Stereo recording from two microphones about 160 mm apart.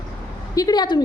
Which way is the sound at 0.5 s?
25° left (ahead or behind).